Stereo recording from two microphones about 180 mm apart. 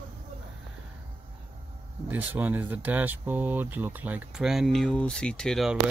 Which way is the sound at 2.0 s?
10° right (ahead or behind).